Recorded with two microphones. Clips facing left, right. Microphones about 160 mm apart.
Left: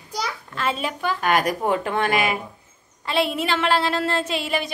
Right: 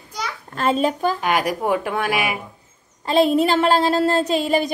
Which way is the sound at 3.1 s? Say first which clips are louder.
Right 7 dB; 40° right (ahead or behind).